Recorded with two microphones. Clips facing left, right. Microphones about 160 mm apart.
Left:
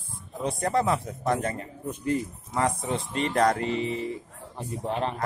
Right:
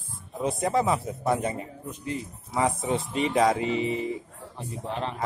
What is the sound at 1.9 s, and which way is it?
Speech, 50° left (ahead or behind).